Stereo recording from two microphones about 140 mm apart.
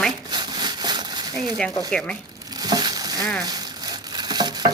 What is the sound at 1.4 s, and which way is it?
Speech, 5° left (ahead or behind).